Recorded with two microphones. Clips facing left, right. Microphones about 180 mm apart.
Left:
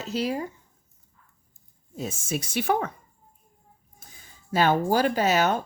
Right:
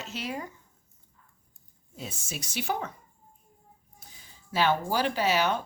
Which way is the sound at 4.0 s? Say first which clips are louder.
Left 3 dB; 50° left (ahead or behind).